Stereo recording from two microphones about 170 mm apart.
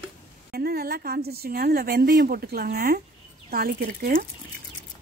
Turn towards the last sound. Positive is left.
turn(degrees=-60)  # may be behind; listen again after turning